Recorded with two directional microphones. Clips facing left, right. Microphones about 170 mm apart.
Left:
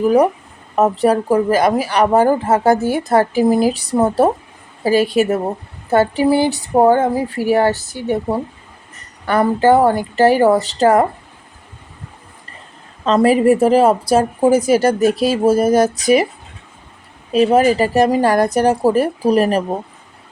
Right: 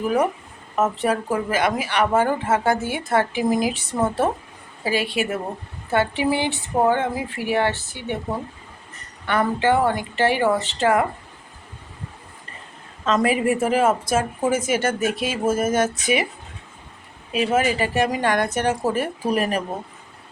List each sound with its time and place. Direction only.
0.0 s speech: 35° left (ahead or behind)
13.1 s speech: 35° left (ahead or behind)
17.3 s speech: 35° left (ahead or behind)